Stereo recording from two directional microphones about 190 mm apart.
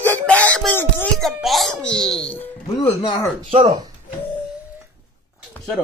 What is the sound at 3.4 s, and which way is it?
Speech, 35° right (ahead or behind).